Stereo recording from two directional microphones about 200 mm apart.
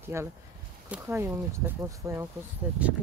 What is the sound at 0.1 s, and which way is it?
Speech, 15° right (ahead or behind).